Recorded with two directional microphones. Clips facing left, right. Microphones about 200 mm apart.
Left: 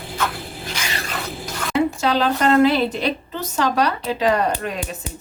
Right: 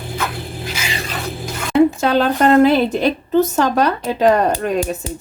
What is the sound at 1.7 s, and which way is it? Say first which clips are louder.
Zipper: right 6 dB; 55° right (ahead or behind).